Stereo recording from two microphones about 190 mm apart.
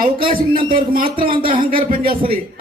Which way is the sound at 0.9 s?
50° right (ahead or behind).